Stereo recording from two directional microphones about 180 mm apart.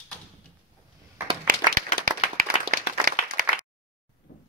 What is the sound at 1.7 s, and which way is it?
Clapping, 50° right (ahead or behind).